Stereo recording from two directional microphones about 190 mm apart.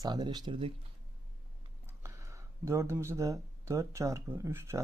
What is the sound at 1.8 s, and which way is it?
Speech, 15° right (ahead or behind).